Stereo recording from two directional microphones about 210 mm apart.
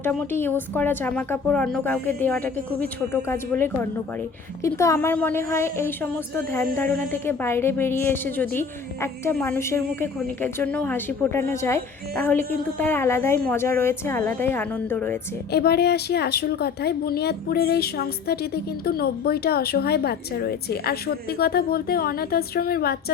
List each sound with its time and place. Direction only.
0.0 s a woman's voice: 10° left (ahead or behind)
15.5 s a woman's voice: 50° left (ahead or behind)